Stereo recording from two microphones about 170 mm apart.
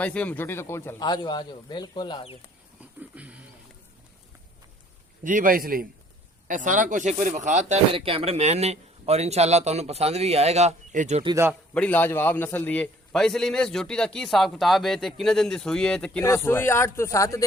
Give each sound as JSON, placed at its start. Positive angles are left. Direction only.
{"t": 0.0, "sound": "speech", "side_deg": 10}
{"t": 3.0, "sound": "a sound", "side_deg": -10}
{"t": 5.2, "sound": "a man's voice", "side_deg": -50}
{"t": 11.7, "sound": "a man's voice", "side_deg": 10}